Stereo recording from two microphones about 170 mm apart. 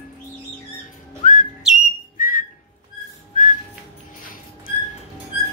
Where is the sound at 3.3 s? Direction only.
50° left (ahead or behind).